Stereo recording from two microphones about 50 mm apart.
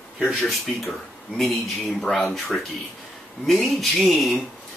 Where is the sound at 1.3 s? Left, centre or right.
Centre.